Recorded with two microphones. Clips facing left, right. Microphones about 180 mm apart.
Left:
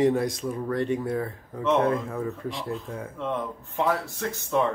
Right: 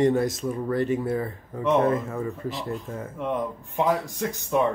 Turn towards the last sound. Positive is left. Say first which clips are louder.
# right 2 dB
turn(degrees=-15)  # may be behind; listen again after turning